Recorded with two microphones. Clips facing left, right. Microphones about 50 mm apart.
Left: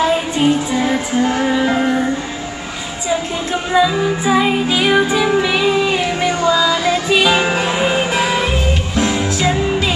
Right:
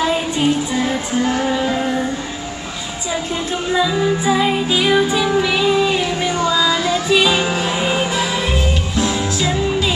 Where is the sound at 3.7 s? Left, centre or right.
Centre.